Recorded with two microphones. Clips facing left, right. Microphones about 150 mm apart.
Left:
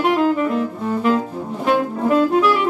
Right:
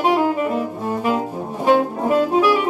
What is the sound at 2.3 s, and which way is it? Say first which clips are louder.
Saxophone: even; 15° right (ahead or behind).